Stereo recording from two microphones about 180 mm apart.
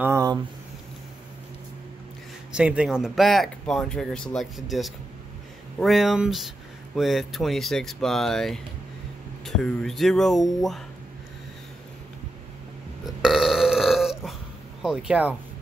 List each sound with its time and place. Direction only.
0.0 s a sound: 15° right (ahead or behind)
2.5 s speech: 5° right (ahead or behind)
13.0 s burping: centre (ahead or behind)
14.8 s speech: 5° right (ahead or behind)